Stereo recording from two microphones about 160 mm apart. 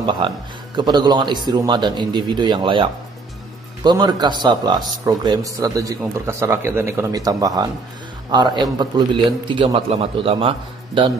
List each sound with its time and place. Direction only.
0.2 s a man's voice: 30° right (ahead or behind)